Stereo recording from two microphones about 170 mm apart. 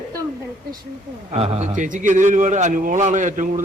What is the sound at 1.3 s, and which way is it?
A man's voice, 35° right (ahead or behind).